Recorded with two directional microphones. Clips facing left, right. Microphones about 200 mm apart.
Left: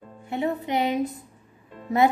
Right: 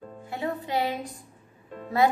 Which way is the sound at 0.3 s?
20° left (ahead or behind).